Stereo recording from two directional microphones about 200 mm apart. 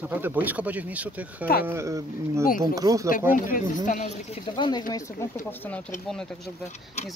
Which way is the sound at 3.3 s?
40° left (ahead or behind).